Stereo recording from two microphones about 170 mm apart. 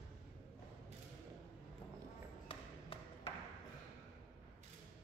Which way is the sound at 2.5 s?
30° left (ahead or behind).